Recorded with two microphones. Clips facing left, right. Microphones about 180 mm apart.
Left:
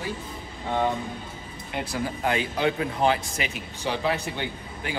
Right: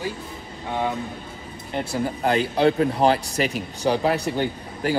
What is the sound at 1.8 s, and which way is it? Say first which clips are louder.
Speech: right 4 dB; 25° right (ahead or behind).